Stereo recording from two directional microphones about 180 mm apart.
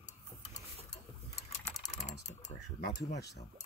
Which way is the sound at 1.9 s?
40° left (ahead or behind).